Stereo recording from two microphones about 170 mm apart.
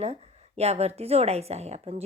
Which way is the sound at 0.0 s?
40° right (ahead or behind).